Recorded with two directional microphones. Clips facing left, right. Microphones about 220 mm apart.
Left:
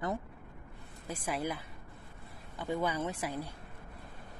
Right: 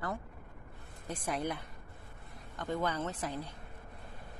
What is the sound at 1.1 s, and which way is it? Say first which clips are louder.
A woman's voice: even; 5° left (ahead or behind).